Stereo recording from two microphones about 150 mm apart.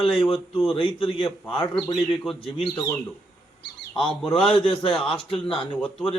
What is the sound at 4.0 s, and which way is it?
Speech, 35° left (ahead or behind).